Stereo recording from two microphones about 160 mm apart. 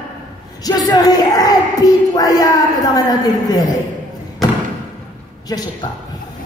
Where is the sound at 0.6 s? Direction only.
25° left (ahead or behind).